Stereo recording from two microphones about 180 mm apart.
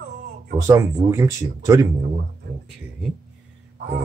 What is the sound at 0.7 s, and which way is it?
Speech, 15° right (ahead or behind).